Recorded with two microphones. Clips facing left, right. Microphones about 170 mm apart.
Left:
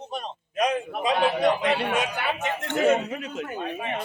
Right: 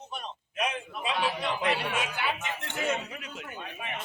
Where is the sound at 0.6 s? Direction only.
40° left (ahead or behind).